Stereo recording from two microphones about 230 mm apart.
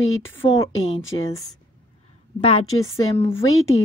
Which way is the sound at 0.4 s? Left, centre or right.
Left.